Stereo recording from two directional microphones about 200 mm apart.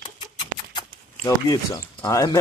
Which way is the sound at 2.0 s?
15° left (ahead or behind).